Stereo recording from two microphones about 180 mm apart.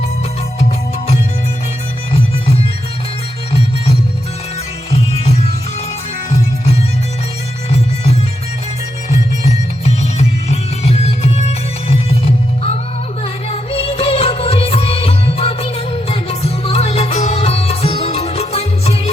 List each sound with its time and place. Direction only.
9.0 s music: 35° left (ahead or behind)